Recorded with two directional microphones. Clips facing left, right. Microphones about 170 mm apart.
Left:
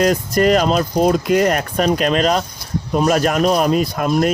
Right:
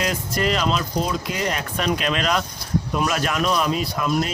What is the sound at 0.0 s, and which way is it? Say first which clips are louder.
Speech: left 9 dB; 45° left (ahead or behind).